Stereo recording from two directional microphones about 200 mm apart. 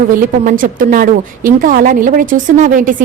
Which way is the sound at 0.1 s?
45° right (ahead or behind).